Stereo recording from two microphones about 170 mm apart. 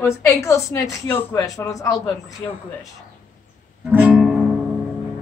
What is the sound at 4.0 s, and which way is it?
Guitar, 5° right (ahead or behind).